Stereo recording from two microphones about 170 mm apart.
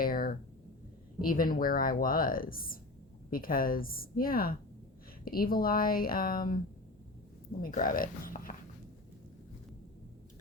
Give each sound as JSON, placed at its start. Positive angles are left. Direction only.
{"t": 0.0, "sound": "a sound", "side_deg": 60}
{"t": 1.2, "sound": "speech", "side_deg": 55}
{"t": 7.6, "sound": "speech", "side_deg": 55}